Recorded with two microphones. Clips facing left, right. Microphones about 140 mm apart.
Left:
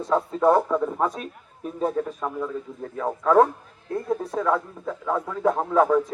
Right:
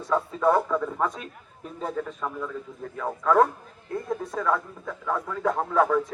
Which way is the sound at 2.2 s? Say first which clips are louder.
Left 3 dB; 25° left (ahead or behind).